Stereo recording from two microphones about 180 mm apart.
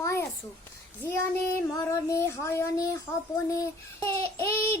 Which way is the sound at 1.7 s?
20° left (ahead or behind).